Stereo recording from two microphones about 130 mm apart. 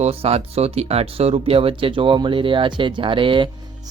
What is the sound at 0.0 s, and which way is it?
Speech, 50° right (ahead or behind).